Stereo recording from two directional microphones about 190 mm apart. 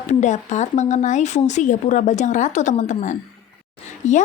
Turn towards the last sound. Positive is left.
turn(degrees=40)  # may be behind; listen again after turning